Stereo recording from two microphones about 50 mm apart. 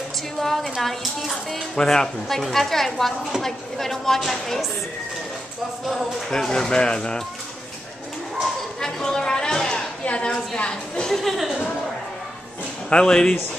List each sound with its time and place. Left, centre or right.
0.4 s a woman's voice: centre
6.3 s speech: centre
8.8 s a sound: centre
10.0 s a woman's voice: centre
11.1 s speech: centre
12.9 s speech: centre